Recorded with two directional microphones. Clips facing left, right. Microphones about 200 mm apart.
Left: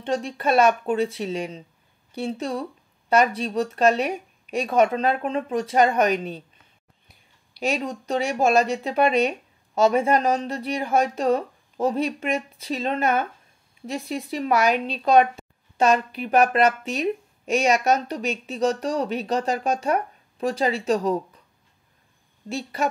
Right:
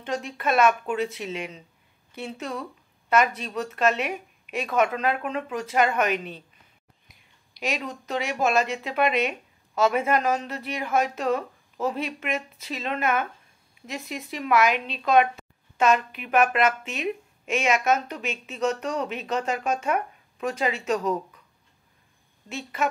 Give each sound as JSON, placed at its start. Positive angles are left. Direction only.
{"t": 0.0, "sound": "a woman's voice", "side_deg": 30}
{"t": 7.6, "sound": "a woman's voice", "side_deg": 35}
{"t": 22.5, "sound": "a woman's voice", "side_deg": 35}